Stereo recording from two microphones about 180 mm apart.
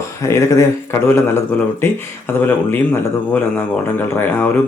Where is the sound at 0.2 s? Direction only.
15° left (ahead or behind).